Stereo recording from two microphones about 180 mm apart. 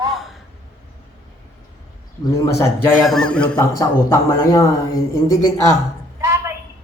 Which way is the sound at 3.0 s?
Centre (ahead or behind).